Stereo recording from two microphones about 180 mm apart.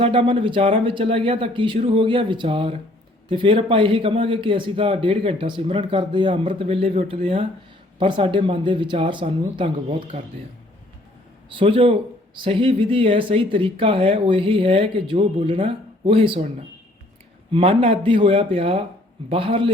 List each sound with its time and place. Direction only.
0.0 s a man's voice: 30° right (ahead or behind)
11.5 s a man's voice: 30° right (ahead or behind)